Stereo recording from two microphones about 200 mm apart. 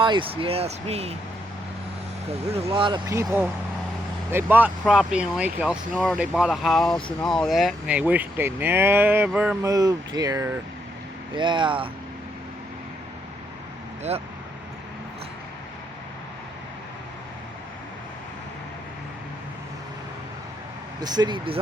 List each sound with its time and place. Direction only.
0.0 s speech: 25° right (ahead or behind)
2.6 s speech: 20° right (ahead or behind); by 9.7 s 5° right (ahead or behind)
9.7 s speech: 20° right (ahead or behind)
21.0 s speech: 20° right (ahead or behind)